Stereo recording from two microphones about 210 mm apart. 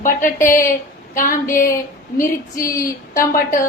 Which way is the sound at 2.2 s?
15° left (ahead or behind).